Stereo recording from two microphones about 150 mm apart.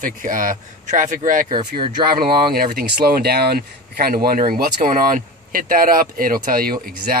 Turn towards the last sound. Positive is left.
turn(degrees=-75)  # may be behind; listen again after turning